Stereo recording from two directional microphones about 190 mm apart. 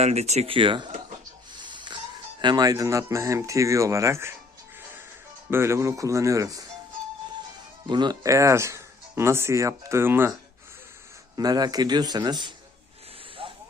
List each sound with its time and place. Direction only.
0.0 s speech: 35° right (ahead or behind)
1.6 s wheeze: 25° right (ahead or behind)
2.4 s speech: 20° right (ahead or behind)
5.5 s speech: 15° right (ahead or behind)
7.9 s speech: 25° right (ahead or behind)
11.3 s a man's voice: 20° right (ahead or behind)
13.4 s hiss: 30° right (ahead or behind)